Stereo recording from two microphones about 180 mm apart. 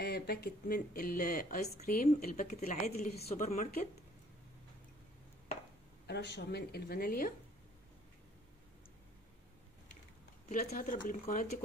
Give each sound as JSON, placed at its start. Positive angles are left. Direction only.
{"t": 0.0, "sound": "speech", "side_deg": 60}
{"t": 2.8, "sound": "speech", "side_deg": 55}
{"t": 3.2, "sound": "speech", "side_deg": 35}
{"t": 6.0, "sound": "speech", "side_deg": 70}
{"t": 10.5, "sound": "speech", "side_deg": 50}